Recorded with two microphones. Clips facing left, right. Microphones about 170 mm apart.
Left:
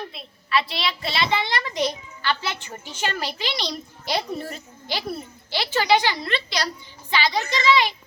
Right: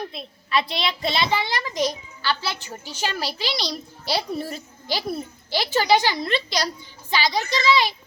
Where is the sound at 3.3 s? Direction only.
35° right (ahead or behind).